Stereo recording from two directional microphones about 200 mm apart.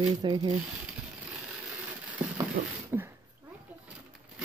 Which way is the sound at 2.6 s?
45° right (ahead or behind).